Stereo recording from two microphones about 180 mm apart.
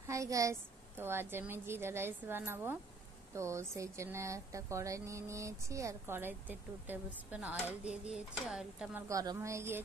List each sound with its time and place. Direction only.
0.0 s speech: 15° right (ahead or behind)
9.1 s speech: 20° right (ahead or behind)